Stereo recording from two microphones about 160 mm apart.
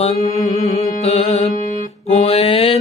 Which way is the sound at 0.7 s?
40° left (ahead or behind).